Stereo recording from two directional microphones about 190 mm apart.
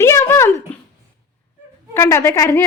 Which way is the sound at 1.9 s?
15° left (ahead or behind).